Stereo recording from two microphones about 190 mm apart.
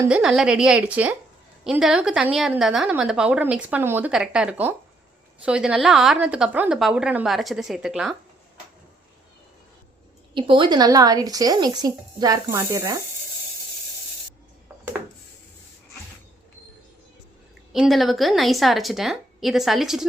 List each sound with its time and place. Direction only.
0.0 s a woman's voice: 5° right (ahead or behind)
10.3 s speech: 25° right (ahead or behind)
17.7 s a woman's voice: centre (ahead or behind)